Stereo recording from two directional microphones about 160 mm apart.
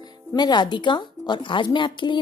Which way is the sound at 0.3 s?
25° left (ahead or behind).